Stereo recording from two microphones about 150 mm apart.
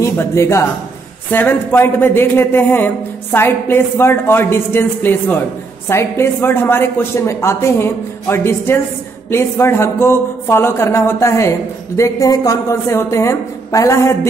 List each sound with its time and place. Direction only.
0.0 s a woman's voice: 20° left (ahead or behind)